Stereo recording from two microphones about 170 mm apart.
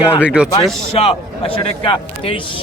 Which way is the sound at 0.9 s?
35° left (ahead or behind).